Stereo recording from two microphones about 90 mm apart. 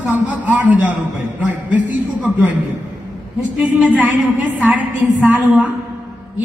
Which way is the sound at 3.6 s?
15° right (ahead or behind).